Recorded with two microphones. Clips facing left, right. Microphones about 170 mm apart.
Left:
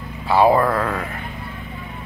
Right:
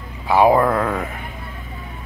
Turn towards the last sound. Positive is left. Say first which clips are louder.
# right 2 dB
turn(degrees=0)  # may be behind; listen again after turning